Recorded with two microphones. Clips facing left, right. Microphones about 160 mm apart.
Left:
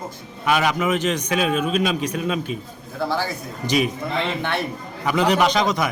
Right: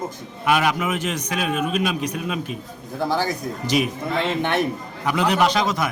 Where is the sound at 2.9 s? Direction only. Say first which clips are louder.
Right 1 dB; 15° right (ahead or behind).